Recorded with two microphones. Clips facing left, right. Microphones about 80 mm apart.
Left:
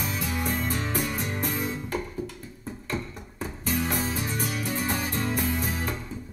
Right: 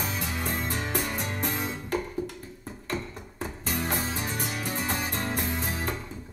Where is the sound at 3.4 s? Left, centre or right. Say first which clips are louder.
Left 3 dB; right.